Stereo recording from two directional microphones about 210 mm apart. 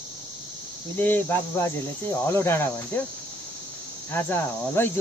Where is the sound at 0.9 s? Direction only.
10° left (ahead or behind).